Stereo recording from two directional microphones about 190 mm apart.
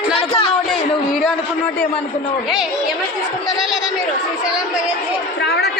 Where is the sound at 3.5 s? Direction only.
Centre (ahead or behind).